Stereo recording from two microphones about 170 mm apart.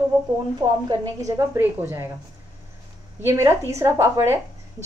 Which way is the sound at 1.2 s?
15° right (ahead or behind).